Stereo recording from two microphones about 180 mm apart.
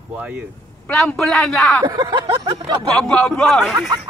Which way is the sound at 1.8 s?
25° right (ahead or behind).